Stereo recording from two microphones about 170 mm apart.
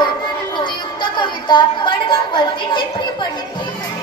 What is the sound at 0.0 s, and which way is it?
Music, 25° left (ahead or behind).